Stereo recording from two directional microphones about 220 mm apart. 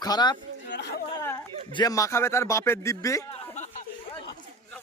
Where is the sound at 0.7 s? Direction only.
50° left (ahead or behind).